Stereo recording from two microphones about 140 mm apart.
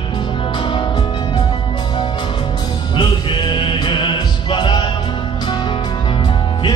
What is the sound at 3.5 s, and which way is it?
Music, 35° left (ahead or behind).